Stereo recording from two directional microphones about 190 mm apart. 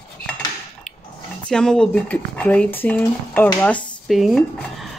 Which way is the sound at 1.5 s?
5° left (ahead or behind).